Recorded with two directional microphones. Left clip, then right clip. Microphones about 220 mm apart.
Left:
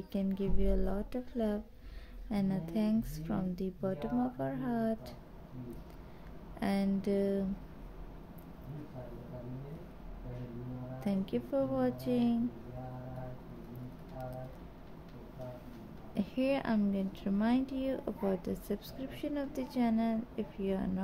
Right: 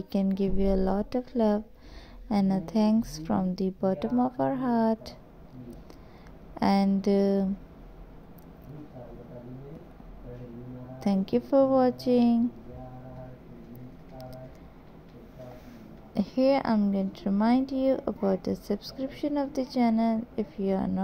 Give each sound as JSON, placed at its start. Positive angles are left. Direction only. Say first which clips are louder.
{"t": 0.1, "sound": "a woman's voice", "louder": "right 8 dB", "side_deg": -25}
{"t": 6.6, "sound": "a woman's voice", "louder": "right 9 dB", "side_deg": -30}
{"t": 11.0, "sound": "a woman's voice", "louder": "right 9 dB", "side_deg": -25}
{"t": 16.2, "sound": "a woman's voice", "louder": "right 9 dB", "side_deg": -20}